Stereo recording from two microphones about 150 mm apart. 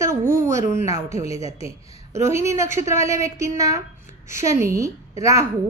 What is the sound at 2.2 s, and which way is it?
A woman's voice, 20° right (ahead or behind).